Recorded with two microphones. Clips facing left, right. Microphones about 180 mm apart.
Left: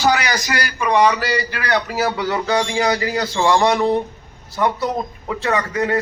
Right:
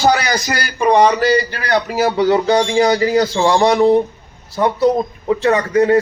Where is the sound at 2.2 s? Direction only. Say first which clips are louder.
Right 6 dB; 20° right (ahead or behind).